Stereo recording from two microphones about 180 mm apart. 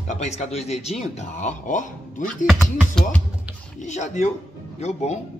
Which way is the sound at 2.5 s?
Centre (ahead or behind).